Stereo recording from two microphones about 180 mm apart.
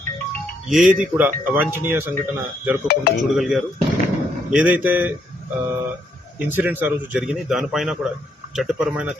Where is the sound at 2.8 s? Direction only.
60° left (ahead or behind).